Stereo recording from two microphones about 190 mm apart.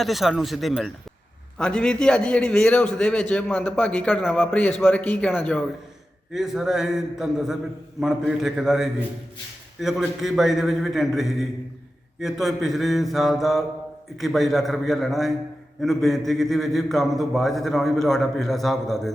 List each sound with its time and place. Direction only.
0.0 s a man's voice: centre (ahead or behind)
6.3 s a man's voice: centre (ahead or behind)